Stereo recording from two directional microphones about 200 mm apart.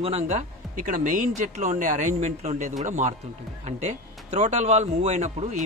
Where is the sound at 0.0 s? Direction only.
35° right (ahead or behind).